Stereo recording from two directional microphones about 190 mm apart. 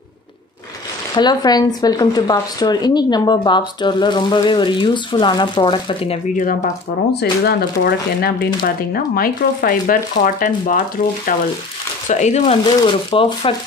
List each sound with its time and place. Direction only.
1.1 s speech: 20° left (ahead or behind)
6.2 s speech: 45° left (ahead or behind)
7.2 s speech: 55° left (ahead or behind); by 12.5 s 35° left (ahead or behind)
12.6 s speech: 25° left (ahead or behind)